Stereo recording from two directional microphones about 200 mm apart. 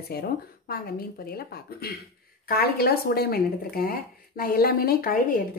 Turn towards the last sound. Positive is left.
turn(degrees=45)  # may be behind; listen again after turning